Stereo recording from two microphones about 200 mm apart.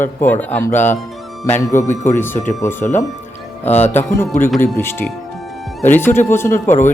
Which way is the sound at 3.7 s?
10° left (ahead or behind).